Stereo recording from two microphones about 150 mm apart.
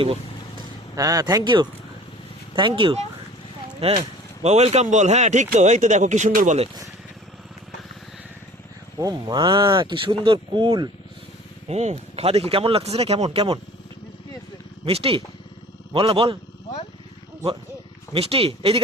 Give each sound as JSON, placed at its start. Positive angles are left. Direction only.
{"t": 0.9, "sound": "speech", "side_deg": -25}
{"t": 9.0, "sound": "speech", "side_deg": -25}
{"t": 11.7, "sound": "speech", "side_deg": -45}
{"t": 14.8, "sound": "speech", "side_deg": -40}
{"t": 18.1, "sound": "speech", "side_deg": -40}